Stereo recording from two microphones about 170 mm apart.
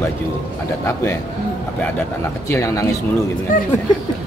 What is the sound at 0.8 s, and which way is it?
Speech, 15° left (ahead or behind).